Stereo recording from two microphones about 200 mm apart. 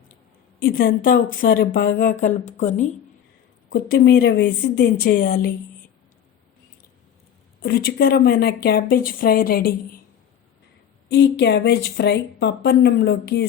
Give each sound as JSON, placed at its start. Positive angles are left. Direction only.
{"t": 0.6, "sound": "speech", "side_deg": 45}
{"t": 3.7, "sound": "speech", "side_deg": 50}
{"t": 7.6, "sound": "speech", "side_deg": 50}
{"t": 11.1, "sound": "speech", "side_deg": 60}